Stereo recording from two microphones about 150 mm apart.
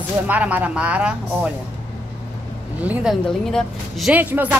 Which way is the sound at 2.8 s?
10° right (ahead or behind).